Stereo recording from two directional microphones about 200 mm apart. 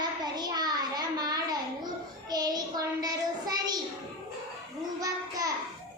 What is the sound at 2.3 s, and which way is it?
Child singing, 20° right (ahead or behind).